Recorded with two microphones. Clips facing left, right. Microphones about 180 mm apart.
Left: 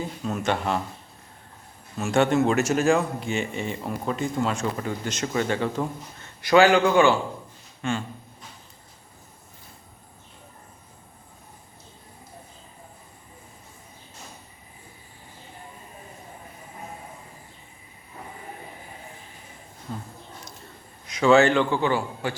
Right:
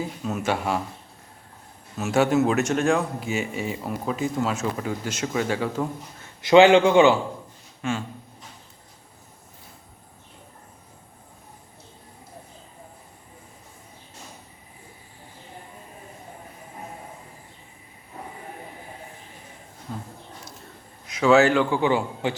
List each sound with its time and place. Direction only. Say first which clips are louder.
0.0 s a man's voice: even; 5° right (ahead or behind)
2.0 s a man's voice: even; 5° right (ahead or behind)
6.4 s speech: right 3 dB; 25° right (ahead or behind)
7.8 s speech: even; 5° right (ahead or behind)
19.9 s a sound: even; centre (ahead or behind)
21.1 s a man's voice: even; 5° right (ahead or behind)